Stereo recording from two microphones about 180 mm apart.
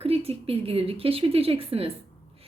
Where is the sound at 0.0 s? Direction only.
35° right (ahead or behind).